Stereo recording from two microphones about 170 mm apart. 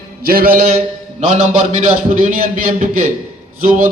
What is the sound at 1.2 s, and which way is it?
A man's voice, 45° right (ahead or behind).